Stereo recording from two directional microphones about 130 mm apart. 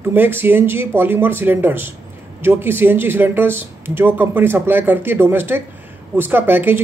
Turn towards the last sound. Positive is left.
turn(degrees=-15)  # may be behind; listen again after turning